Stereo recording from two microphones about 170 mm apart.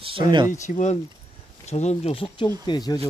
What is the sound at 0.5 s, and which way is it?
Speech, 45° left (ahead or behind).